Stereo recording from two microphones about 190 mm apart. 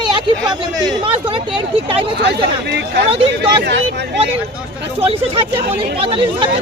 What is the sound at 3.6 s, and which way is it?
Speech, 65° right (ahead or behind).